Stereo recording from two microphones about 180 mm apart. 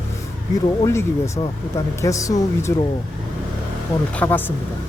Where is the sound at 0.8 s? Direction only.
15° left (ahead or behind).